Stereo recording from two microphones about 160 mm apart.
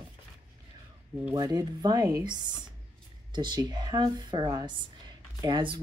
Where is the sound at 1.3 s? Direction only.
25° right (ahead or behind).